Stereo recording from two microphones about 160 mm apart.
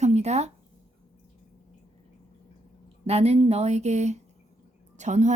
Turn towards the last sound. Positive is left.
turn(degrees=-50)  # may be behind; listen again after turning